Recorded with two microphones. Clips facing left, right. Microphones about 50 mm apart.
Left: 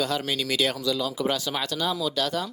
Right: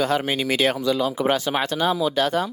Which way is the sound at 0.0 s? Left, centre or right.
Right.